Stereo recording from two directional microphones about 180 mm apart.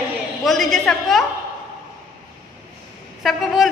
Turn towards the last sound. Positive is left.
turn(degrees=0)  # may be behind; listen again after turning